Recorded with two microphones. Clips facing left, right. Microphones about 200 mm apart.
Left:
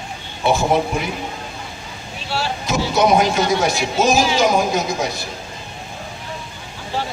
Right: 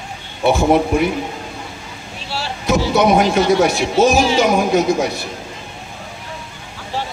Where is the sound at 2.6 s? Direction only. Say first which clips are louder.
Right 4 dB; 60° right (ahead or behind).